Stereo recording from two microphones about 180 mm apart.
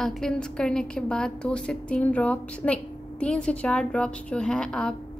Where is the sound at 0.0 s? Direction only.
5° left (ahead or behind).